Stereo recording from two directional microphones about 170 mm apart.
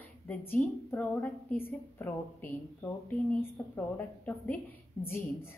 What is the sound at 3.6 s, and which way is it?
A woman's voice, 10° left (ahead or behind).